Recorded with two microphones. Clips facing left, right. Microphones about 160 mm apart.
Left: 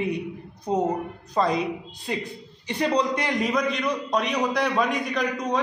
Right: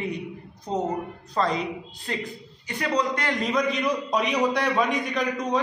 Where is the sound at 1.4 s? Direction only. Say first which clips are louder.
Left 2 dB; 10° left (ahead or behind).